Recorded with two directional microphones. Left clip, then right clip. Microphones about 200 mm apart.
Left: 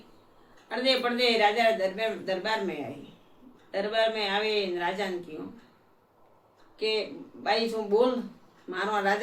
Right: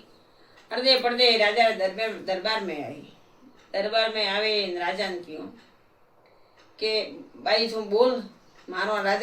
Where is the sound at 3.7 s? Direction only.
20° left (ahead or behind).